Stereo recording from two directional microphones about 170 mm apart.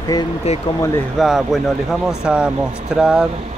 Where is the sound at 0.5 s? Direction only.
40° left (ahead or behind).